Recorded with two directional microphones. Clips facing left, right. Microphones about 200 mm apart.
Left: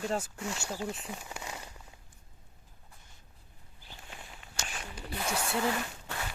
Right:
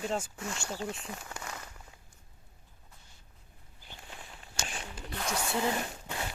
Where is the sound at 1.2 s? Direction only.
15° left (ahead or behind).